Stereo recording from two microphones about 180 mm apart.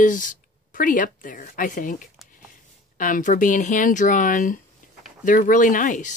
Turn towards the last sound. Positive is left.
turn(degrees=45)  # may be behind; listen again after turning